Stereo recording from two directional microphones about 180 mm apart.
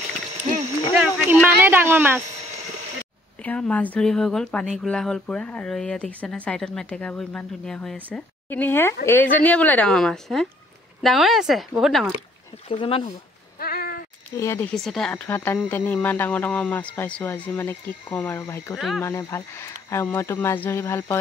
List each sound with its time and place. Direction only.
1.0 s speech: 10° right (ahead or behind)
3.4 s a woman's voice: 5° left (ahead or behind)
12.6 s speech: 30° left (ahead or behind)
13.6 s a sound: 55° left (ahead or behind)
14.3 s a woman's voice: 15° left (ahead or behind)
18.8 s speech: centre (ahead or behind)
19.0 s a woman's voice: 15° left (ahead or behind)